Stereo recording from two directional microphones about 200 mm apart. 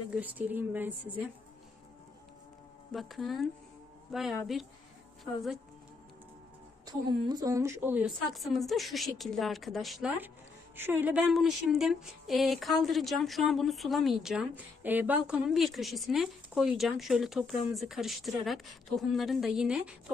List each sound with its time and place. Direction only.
0.1 s a woman's voice: 10° right (ahead or behind)
2.9 s a woman's voice: centre (ahead or behind)
6.9 s a woman's voice: 20° right (ahead or behind); by 20.0 s 5° right (ahead or behind)